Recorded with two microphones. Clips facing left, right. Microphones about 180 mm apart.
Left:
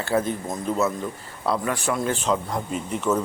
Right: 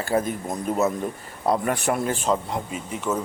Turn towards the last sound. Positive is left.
turn(degrees=-5)  # may be behind; listen again after turning